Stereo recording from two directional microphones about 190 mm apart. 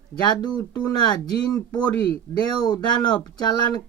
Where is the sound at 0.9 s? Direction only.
20° left (ahead or behind).